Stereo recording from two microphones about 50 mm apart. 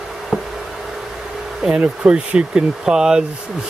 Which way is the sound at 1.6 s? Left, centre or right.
Centre.